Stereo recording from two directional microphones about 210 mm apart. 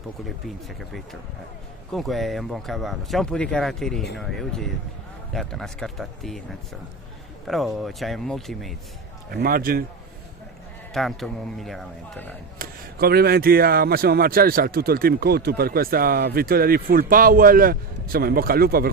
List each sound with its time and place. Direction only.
1.9 s speech: centre (ahead or behind)
9.3 s a man's voice: 45° right (ahead or behind)
10.9 s speech: centre (ahead or behind)
12.5 s a man's voice: 45° right (ahead or behind)